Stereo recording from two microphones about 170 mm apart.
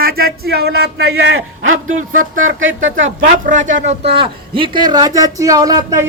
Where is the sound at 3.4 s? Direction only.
50° right (ahead or behind).